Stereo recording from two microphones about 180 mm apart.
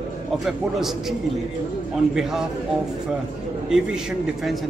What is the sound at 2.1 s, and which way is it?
Speech, centre (ahead or behind).